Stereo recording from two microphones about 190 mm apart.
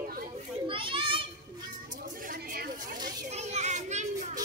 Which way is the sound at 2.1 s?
45° right (ahead or behind).